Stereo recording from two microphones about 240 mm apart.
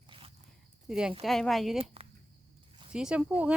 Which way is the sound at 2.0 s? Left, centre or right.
Right.